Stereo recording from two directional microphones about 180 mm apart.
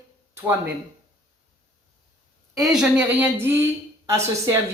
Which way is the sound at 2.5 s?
Centre (ahead or behind).